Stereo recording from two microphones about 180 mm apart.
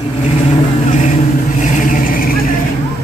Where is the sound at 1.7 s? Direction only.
50° left (ahead or behind).